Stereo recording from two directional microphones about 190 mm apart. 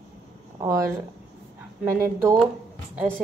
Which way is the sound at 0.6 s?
15° right (ahead or behind).